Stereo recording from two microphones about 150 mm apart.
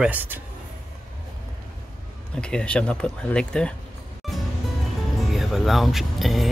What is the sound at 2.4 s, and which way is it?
Speech, 5° left (ahead or behind).